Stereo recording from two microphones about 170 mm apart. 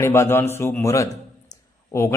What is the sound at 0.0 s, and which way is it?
A man's voice, 15° left (ahead or behind).